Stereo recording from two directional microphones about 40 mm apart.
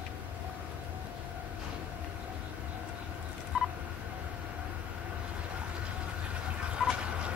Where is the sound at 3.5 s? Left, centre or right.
Centre.